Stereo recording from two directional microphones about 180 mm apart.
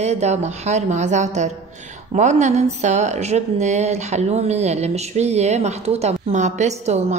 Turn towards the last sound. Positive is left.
turn(degrees=-40)  # may be behind; listen again after turning